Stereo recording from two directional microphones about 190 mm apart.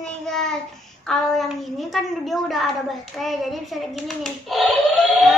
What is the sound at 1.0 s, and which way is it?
A child's voice, centre (ahead or behind).